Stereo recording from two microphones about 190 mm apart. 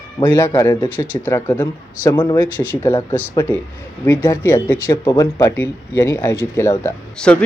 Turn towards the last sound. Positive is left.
turn(degrees=5)  # may be behind; listen again after turning